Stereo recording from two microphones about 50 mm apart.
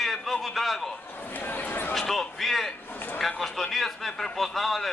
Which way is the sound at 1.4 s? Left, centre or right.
Left.